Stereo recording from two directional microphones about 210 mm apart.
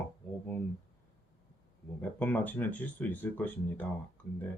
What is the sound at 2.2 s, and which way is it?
Speech, 10° left (ahead or behind).